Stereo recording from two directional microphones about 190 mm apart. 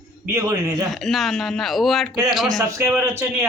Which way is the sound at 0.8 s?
Centre (ahead or behind).